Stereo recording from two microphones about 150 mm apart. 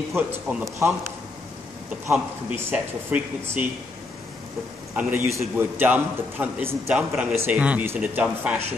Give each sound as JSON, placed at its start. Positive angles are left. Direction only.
{"t": 0.1, "sound": "a man's voice", "side_deg": -15}
{"t": 2.5, "sound": "a man's voice", "side_deg": -10}
{"t": 4.9, "sound": "a man's voice", "side_deg": -15}